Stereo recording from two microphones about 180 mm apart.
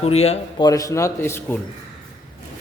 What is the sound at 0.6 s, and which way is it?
Speech, 20° left (ahead or behind).